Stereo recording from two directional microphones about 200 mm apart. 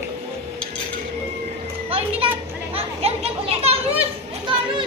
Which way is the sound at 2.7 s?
30° right (ahead or behind).